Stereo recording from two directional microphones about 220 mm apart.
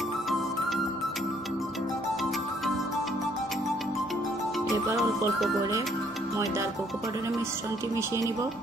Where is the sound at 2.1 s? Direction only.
Centre (ahead or behind).